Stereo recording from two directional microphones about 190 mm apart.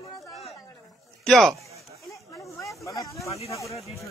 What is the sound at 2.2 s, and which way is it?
Snake, 15° left (ahead or behind).